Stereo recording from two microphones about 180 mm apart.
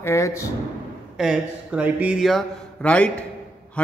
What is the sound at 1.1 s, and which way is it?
Speech, 5° right (ahead or behind).